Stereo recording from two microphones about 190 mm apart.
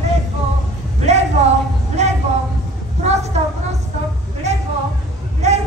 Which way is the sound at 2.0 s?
35° right (ahead or behind).